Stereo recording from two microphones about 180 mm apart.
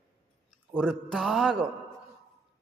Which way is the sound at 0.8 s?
Centre (ahead or behind).